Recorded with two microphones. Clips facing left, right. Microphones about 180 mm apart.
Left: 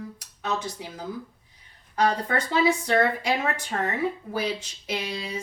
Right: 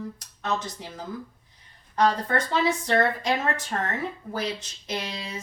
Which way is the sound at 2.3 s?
5° left (ahead or behind).